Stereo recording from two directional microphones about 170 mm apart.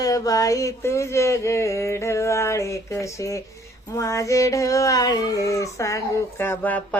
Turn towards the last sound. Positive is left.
turn(degrees=10)  # may be behind; listen again after turning